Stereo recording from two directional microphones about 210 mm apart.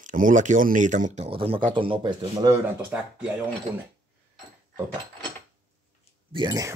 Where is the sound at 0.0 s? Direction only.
40° right (ahead or behind); by 2.5 s 20° right (ahead or behind).